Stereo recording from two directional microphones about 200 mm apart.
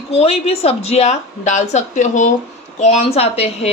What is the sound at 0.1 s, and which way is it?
A woman's voice, 30° left (ahead or behind).